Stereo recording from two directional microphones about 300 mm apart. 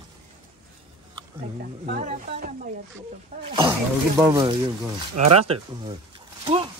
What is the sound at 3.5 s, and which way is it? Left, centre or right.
Speech, centre.